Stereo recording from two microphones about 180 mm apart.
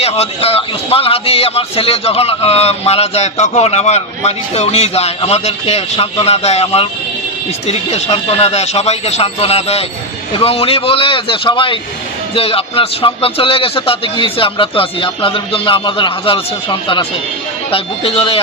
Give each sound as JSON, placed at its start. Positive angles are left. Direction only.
{"t": 0.0, "sound": "speech", "side_deg": 35}